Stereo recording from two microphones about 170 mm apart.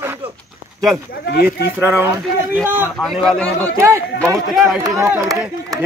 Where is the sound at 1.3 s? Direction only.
70° left (ahead or behind).